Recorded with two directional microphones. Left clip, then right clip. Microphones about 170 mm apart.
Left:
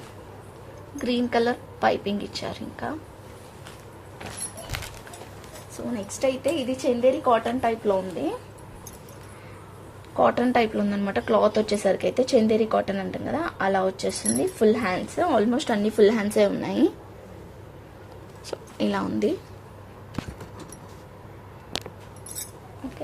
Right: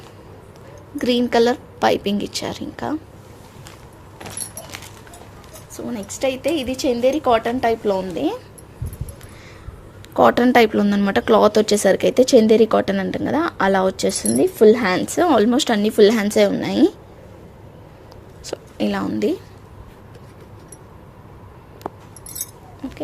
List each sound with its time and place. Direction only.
0.9 s speech: 65° right (ahead or behind)
5.7 s speech: 45° right (ahead or behind); by 8.3 s 60° right (ahead or behind)
10.2 s speech: 65° right (ahead or behind); by 16.9 s 25° right (ahead or behind)
18.4 s a woman's voice: 20° right (ahead or behind)
22.8 s a sound: 55° right (ahead or behind)